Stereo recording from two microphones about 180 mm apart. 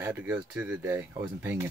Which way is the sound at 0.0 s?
10° right (ahead or behind).